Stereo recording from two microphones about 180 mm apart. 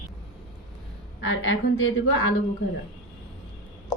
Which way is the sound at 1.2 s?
90° left.